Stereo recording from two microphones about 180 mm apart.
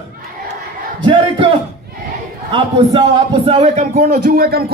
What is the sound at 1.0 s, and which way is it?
Speech, 25° right (ahead or behind).